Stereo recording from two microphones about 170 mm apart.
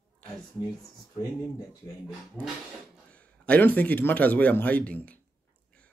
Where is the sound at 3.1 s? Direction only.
10° left (ahead or behind).